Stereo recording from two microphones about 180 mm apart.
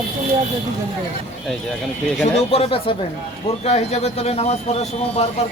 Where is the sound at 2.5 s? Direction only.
30° left (ahead or behind).